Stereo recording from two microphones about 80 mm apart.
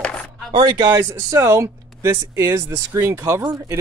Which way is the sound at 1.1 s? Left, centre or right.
Right.